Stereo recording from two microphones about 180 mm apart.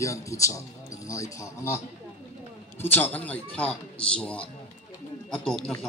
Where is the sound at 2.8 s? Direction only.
10° left (ahead or behind).